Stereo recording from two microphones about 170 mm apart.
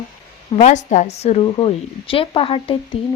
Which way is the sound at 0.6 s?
45° left (ahead or behind).